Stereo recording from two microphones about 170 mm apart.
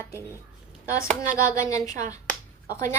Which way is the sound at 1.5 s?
20° left (ahead or behind).